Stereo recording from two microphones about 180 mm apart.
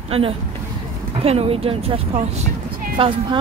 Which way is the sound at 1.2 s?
35° right (ahead or behind).